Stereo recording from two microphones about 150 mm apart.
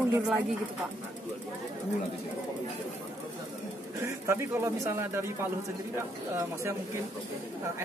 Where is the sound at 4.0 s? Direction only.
20° right (ahead or behind).